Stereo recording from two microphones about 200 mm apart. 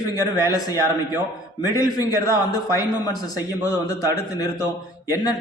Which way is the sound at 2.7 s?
15° left (ahead or behind).